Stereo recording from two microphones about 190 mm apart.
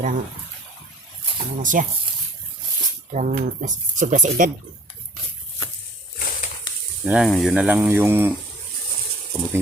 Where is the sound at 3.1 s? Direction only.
40° right (ahead or behind).